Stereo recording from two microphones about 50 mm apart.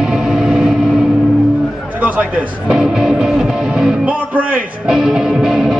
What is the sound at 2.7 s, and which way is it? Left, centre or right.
Music, centre.